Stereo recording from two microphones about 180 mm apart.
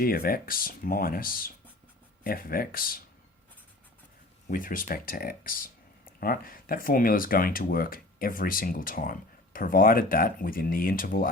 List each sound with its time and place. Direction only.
0.0 s speech: 55° left (ahead or behind)
4.4 s speech: 50° left (ahead or behind)